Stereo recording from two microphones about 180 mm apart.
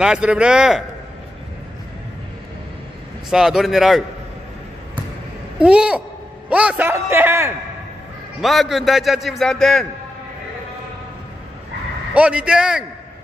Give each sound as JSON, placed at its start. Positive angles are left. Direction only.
{"t": 0.0, "sound": "a man's voice", "side_deg": -5}
{"t": 3.3, "sound": "a man's voice", "side_deg": -5}
{"t": 5.6, "sound": "a man's voice", "side_deg": -5}
{"t": 8.4, "sound": "a man's voice", "side_deg": 0}
{"t": 12.1, "sound": "a man's voice", "side_deg": -5}